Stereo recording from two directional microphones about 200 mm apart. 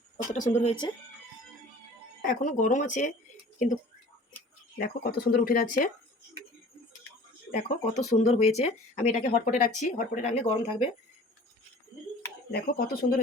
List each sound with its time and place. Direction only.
0.3 s speech: 40° left (ahead or behind)
2.2 s speech: 40° left (ahead or behind)
4.8 s speech: 45° left (ahead or behind)
7.5 s speech: 35° left (ahead or behind)
12.5 s speech: 45° left (ahead or behind)